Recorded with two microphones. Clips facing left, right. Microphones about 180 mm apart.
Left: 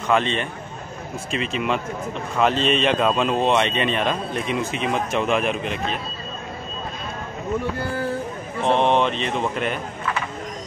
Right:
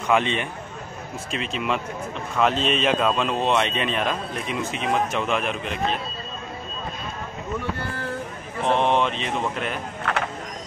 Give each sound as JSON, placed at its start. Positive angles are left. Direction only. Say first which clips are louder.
{"t": 0.1, "sound": "a man's voice", "louder": "left 1 dB", "side_deg": -15}
{"t": 1.3, "sound": "speech", "louder": "left 3 dB", "side_deg": 0}
{"t": 8.7, "sound": "speech", "louder": "left 2 dB", "side_deg": -5}
{"t": 10.1, "sound": "a sound", "louder": "right 1 dB", "side_deg": -70}